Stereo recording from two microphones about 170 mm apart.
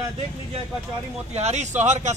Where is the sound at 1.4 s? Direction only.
40° right (ahead or behind).